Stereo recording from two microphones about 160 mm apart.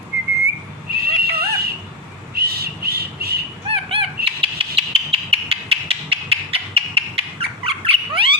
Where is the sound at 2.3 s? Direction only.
75° right (ahead or behind).